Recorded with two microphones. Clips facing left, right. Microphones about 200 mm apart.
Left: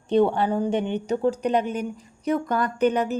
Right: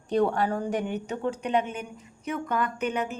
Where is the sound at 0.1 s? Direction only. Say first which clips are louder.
Left 4 dB; 25° left (ahead or behind).